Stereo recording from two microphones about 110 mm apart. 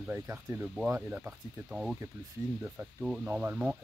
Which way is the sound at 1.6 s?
5° right (ahead or behind).